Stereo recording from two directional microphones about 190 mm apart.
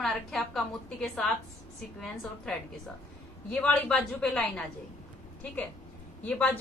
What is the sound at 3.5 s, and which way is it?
A woman's voice, 5° left (ahead or behind).